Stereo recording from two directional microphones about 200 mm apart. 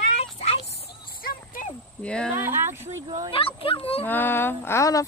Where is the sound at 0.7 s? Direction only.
45° left (ahead or behind).